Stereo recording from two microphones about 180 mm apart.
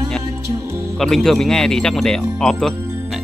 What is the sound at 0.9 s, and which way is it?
Speech, centre (ahead or behind).